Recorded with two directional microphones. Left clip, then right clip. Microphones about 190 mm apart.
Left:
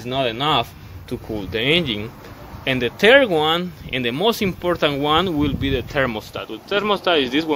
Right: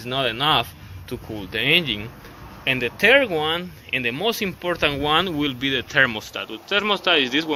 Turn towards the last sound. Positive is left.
turn(degrees=20)  # may be behind; listen again after turning